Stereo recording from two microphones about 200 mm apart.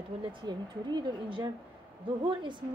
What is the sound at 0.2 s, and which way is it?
Speech, 25° right (ahead or behind).